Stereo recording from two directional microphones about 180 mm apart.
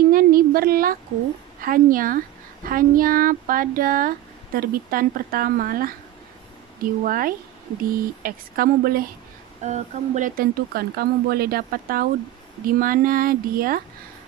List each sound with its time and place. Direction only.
0.1 s a sound: 55° right (ahead or behind)
1.6 s a woman's voice: 50° right (ahead or behind)
9.6 s a woman's voice: 40° right (ahead or behind)